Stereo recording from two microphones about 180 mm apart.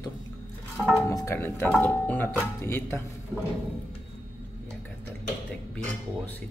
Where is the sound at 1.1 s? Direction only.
15° left (ahead or behind).